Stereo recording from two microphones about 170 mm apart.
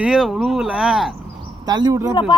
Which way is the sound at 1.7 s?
20° right (ahead or behind).